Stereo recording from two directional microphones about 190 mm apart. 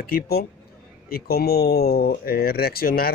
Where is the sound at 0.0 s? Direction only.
55° left (ahead or behind).